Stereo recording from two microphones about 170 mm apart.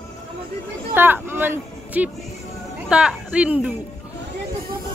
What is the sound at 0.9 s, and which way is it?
A woman's voice, 10° right (ahead or behind).